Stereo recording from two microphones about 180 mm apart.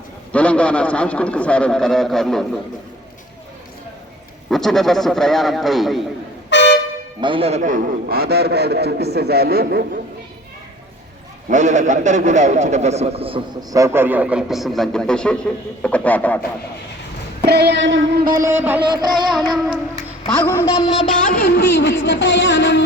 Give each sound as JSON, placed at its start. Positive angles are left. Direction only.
{"t": 0.3, "sound": "a man's voice", "side_deg": 5}
{"t": 4.4, "sound": "a man's voice", "side_deg": 0}
{"t": 6.5, "sound": "air horn", "side_deg": 75}
{"t": 7.2, "sound": "a man's voice", "side_deg": -30}
{"t": 11.4, "sound": "a man's voice", "side_deg": -40}
{"t": 17.4, "sound": "a sound", "side_deg": -65}
{"t": 18.3, "sound": "speech", "side_deg": -15}
{"t": 18.9, "sound": "a man's voice", "side_deg": -25}
{"t": 20.3, "sound": "a man's voice", "side_deg": 10}
{"t": 21.2, "sound": "a sound", "side_deg": 55}